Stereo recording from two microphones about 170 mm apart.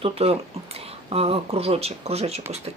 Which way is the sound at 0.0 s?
35° right (ahead or behind).